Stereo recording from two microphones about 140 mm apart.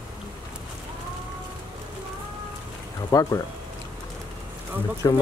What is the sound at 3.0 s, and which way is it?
Speech, 25° left (ahead or behind).